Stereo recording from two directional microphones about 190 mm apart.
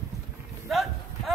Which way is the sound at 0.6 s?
Centre (ahead or behind).